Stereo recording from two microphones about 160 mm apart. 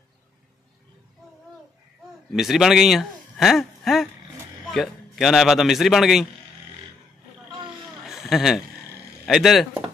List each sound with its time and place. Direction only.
2.3 s a man's voice: centre (ahead or behind)
8.0 s vehicle: centre (ahead or behind)
9.2 s a man's voice: centre (ahead or behind)